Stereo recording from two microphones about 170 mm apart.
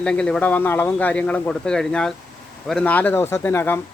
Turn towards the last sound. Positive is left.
turn(degrees=10)  # may be behind; listen again after turning